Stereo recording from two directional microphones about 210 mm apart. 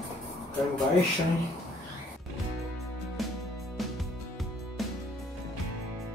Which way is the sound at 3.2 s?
Centre (ahead or behind).